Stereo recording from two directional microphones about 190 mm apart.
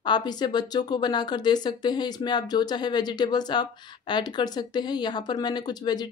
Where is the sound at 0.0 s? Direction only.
20° left (ahead or behind).